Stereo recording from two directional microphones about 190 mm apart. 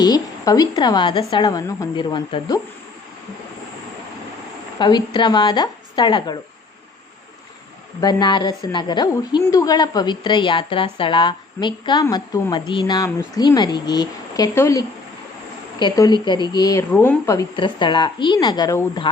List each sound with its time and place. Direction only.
0.0 s a woman's voice: 20° left (ahead or behind)
4.8 s a woman's voice: 25° left (ahead or behind)
8.0 s a woman's voice: 25° left (ahead or behind)